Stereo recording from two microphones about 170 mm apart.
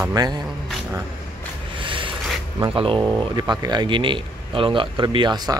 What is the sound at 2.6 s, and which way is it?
Speech, 30° right (ahead or behind).